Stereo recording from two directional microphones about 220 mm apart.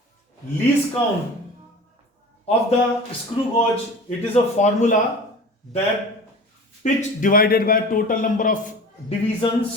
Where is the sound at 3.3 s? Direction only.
30° left (ahead or behind).